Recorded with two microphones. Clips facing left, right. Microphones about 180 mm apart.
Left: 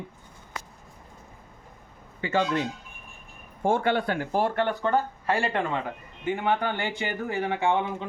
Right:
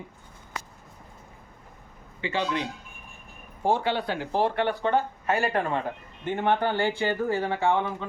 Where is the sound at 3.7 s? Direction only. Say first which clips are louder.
Left 1 dB; 50° left (ahead or behind).